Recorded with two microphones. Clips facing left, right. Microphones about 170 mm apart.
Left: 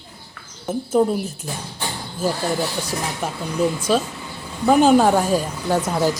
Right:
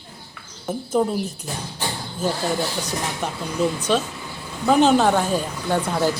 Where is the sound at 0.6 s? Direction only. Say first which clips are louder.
Left 3 dB; 5° left (ahead or behind).